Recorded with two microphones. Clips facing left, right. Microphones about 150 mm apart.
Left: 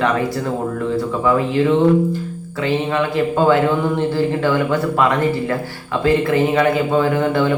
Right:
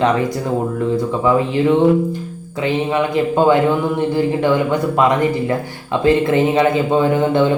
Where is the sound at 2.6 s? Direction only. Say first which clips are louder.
Right 1 dB; 20° right (ahead or behind).